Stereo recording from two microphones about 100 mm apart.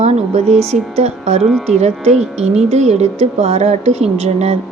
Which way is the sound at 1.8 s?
90° right.